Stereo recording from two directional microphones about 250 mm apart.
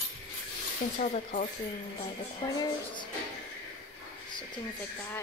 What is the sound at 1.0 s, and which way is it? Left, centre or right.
Speech, left.